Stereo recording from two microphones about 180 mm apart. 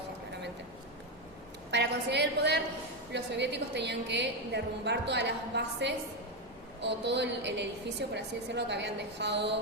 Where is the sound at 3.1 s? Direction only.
75° right (ahead or behind).